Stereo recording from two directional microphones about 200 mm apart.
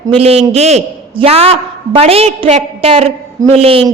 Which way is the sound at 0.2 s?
30° right (ahead or behind).